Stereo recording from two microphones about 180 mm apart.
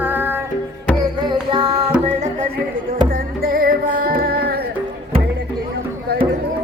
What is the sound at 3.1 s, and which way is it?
Music, 55° right (ahead or behind).